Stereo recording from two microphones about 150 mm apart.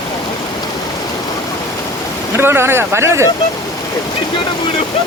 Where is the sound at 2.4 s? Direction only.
15° right (ahead or behind).